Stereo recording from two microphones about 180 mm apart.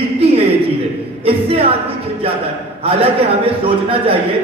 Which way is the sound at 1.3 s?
30° right (ahead or behind).